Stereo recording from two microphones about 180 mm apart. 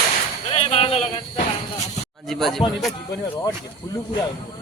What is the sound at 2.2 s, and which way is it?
Speech, centre (ahead or behind).